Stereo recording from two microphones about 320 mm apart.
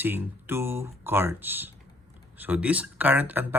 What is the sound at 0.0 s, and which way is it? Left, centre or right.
Speech, centre.